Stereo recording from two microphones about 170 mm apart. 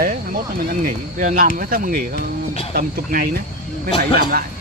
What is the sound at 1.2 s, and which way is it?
Speech, 50° right (ahead or behind).